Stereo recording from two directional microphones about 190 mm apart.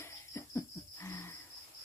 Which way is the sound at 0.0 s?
15° left (ahead or behind).